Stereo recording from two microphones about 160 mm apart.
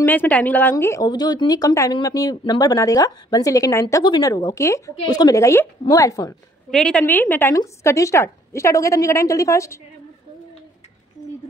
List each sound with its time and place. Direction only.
0.0 s a woman's voice: 10° left (ahead or behind)
6.7 s a woman's voice: 5° left (ahead or behind)